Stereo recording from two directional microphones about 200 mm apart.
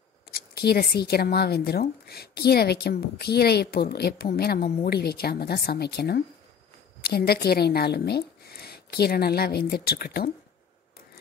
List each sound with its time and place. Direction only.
0.3 s a woman's voice: 50° left (ahead or behind)